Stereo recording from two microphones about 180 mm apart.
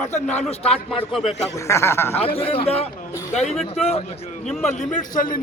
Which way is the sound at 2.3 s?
30° left (ahead or behind).